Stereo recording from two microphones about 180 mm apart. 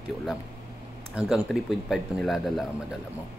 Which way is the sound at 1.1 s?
Centre (ahead or behind).